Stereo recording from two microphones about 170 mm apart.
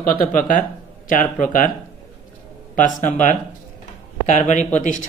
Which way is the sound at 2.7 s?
50° left (ahead or behind).